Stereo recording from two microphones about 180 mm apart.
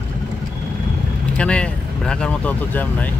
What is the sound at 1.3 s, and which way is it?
Speech, 5° left (ahead or behind).